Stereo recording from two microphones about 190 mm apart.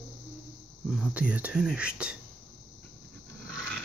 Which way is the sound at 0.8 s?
5° right (ahead or behind).